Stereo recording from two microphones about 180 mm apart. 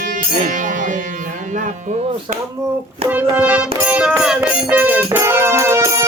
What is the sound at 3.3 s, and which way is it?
Music, 10° right (ahead or behind).